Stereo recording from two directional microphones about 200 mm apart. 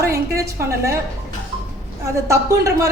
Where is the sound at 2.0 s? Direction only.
15° right (ahead or behind).